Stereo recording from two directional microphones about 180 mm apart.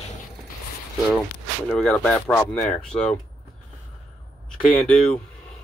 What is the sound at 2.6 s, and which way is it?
Speech, 40° left (ahead or behind).